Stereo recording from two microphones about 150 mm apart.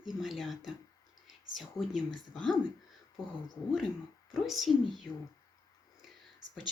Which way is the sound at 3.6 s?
25° left (ahead or behind).